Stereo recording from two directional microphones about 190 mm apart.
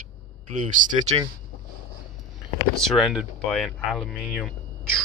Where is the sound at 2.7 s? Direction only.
Centre (ahead or behind).